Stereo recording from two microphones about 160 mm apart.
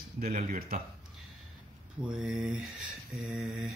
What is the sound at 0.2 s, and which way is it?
Speech, 60° right (ahead or behind).